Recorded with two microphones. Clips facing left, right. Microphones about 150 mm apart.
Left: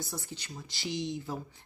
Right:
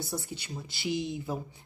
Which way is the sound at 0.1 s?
5° right (ahead or behind).